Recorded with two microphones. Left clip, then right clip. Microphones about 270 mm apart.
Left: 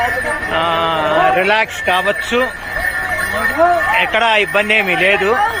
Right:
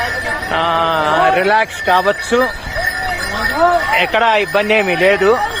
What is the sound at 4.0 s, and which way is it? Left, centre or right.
Speech, centre.